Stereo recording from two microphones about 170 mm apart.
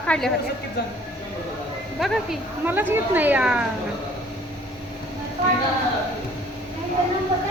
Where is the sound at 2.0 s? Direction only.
5° right (ahead or behind).